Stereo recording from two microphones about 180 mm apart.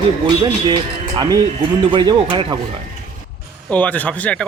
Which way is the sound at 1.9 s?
25° right (ahead or behind).